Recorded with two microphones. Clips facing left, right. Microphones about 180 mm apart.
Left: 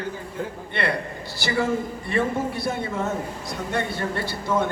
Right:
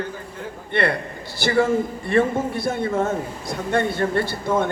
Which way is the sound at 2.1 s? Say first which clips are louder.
Right 4 dB; 55° right (ahead or behind).